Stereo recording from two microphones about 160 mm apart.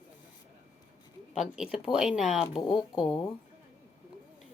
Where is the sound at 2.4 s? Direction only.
30° left (ahead or behind).